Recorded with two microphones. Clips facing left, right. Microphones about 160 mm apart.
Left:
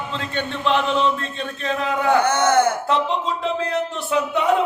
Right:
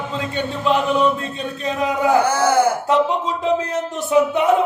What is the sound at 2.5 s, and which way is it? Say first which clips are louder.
Speech: right 1 dB; 10° right (ahead or behind).